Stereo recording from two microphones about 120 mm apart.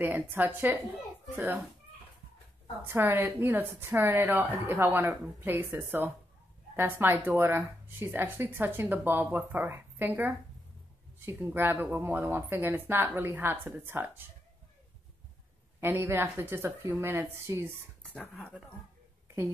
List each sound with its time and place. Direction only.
0.0 s speech: 15° right (ahead or behind)
2.8 s a woman's voice: 15° right (ahead or behind)
15.8 s a woman's voice: 20° right (ahead or behind)
19.2 s a sound: 25° right (ahead or behind)